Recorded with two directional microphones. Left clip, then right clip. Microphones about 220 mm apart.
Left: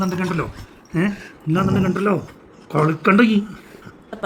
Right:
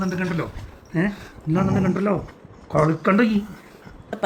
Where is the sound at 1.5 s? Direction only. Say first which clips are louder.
Left 2 dB; 20° left (ahead or behind).